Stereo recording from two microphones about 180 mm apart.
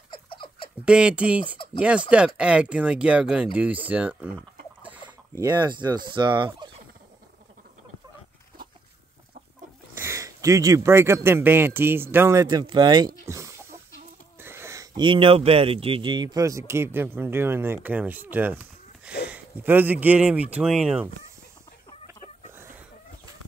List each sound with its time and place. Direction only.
0.1 s baby laughter: 25° left (ahead or behind)
0.8 s speech: 5° right (ahead or behind)
5.0 s speech: 20° right (ahead or behind)
9.9 s speech: 15° right (ahead or behind)
13.3 s chicken: 15° right (ahead or behind)
14.4 s speech: 15° right (ahead or behind)